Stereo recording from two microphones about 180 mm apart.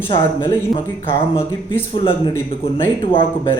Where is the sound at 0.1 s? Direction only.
25° left (ahead or behind).